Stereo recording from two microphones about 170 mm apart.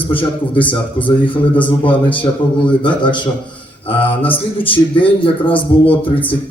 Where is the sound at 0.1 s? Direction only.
30° left (ahead or behind).